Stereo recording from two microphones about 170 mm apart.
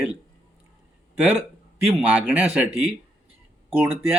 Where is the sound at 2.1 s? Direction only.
10° right (ahead or behind).